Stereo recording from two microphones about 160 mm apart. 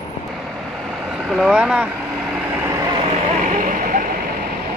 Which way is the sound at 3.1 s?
55° right (ahead or behind).